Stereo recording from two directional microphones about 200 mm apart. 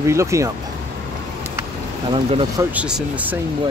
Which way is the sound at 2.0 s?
25° right (ahead or behind).